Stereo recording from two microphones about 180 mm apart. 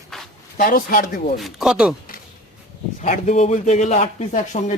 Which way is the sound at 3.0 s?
40° left (ahead or behind).